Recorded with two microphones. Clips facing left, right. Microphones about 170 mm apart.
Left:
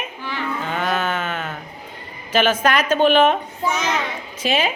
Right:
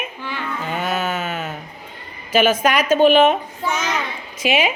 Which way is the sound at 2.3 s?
10° right (ahead or behind).